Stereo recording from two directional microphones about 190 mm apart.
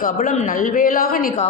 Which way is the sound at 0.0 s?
45° left (ahead or behind).